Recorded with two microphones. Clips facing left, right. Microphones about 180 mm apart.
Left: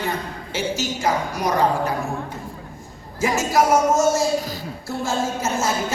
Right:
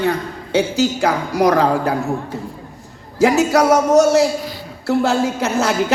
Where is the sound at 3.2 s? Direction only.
75° right (ahead or behind).